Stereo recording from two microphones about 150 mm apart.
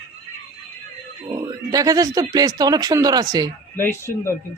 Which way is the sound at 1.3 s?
25° right (ahead or behind).